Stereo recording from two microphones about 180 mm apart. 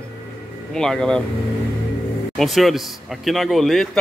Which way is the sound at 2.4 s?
Centre (ahead or behind).